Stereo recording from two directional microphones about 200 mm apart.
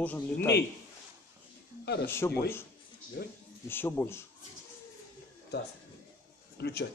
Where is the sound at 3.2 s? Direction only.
55° left (ahead or behind).